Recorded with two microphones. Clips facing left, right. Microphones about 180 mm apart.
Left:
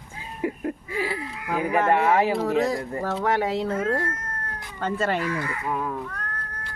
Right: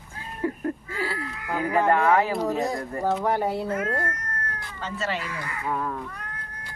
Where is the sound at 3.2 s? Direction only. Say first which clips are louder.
Left 1 dB; 90° left.